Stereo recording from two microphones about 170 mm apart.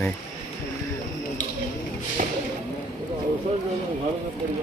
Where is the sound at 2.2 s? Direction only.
55° right (ahead or behind).